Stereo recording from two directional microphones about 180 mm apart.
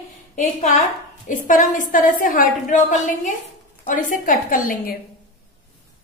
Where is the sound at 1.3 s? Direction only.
45° left (ahead or behind).